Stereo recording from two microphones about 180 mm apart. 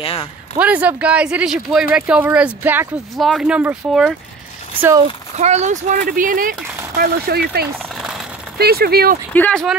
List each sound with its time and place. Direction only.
0.0 s speech: 30° left (ahead or behind)
0.6 s speech: 10° right (ahead or behind)
5.4 s speech: 40° right (ahead or behind)
7.0 s speech: 60° right (ahead or behind)
7.6 s a sound: 5° right (ahead or behind)
8.5 s speech: 60° right (ahead or behind)
9.3 s speech: 5° left (ahead or behind)